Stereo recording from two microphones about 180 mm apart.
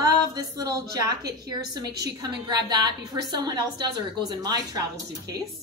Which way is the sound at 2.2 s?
25° right (ahead or behind).